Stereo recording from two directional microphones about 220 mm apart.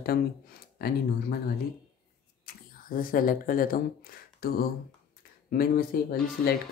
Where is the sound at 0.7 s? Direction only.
45° left (ahead or behind).